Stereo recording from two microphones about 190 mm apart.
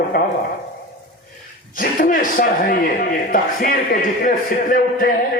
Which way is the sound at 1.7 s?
45° left (ahead or behind).